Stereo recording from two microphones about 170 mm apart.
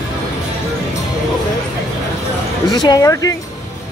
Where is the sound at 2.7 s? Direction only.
20° left (ahead or behind).